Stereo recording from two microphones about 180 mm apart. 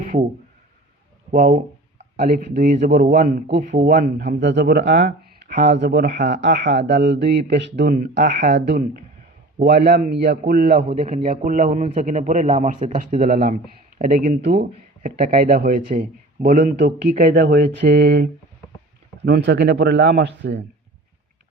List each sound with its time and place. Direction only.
1.3 s a man's voice: 50° right (ahead or behind); by 5.0 s 70° right (ahead or behind)
5.0 s a sound: 45° right (ahead or behind)
5.8 s a man's voice: 65° right (ahead or behind)
17.7 s speech: 65° right (ahead or behind)